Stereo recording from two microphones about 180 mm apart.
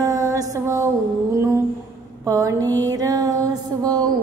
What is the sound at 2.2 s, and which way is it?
Mantra, 20° right (ahead or behind).